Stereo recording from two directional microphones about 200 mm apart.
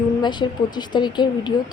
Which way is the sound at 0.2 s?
20° left (ahead or behind).